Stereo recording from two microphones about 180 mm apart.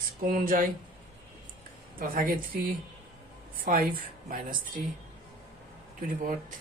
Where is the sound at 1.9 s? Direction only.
50° right (ahead or behind).